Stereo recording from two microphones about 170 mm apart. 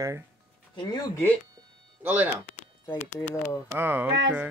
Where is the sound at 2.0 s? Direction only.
10° right (ahead or behind).